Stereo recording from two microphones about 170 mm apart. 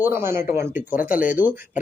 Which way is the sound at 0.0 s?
15° right (ahead or behind).